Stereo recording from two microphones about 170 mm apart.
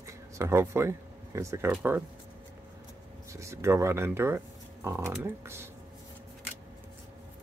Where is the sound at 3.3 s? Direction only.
15° right (ahead or behind).